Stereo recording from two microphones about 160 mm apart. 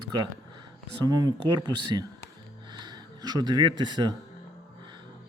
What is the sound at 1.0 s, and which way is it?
Speech, 25° right (ahead or behind).